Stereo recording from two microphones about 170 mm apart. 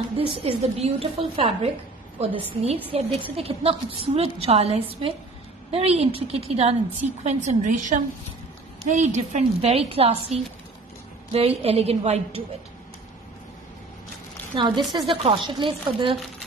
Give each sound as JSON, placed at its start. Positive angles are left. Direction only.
{"t": 0.3, "sound": "a woman's voice", "side_deg": -35}
{"t": 14.9, "sound": "speech", "side_deg": -30}